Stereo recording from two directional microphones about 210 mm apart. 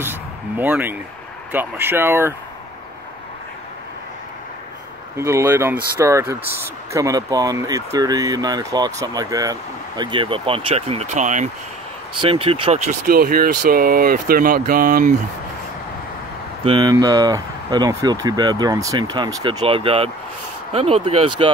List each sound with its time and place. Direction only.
0.0 s a sound: 10° right (ahead or behind)
1.5 s speech: 10° right (ahead or behind)
5.1 s speech: 15° right (ahead or behind)
13.0 s speech: 45° right (ahead or behind)
16.6 s speech: 20° right (ahead or behind)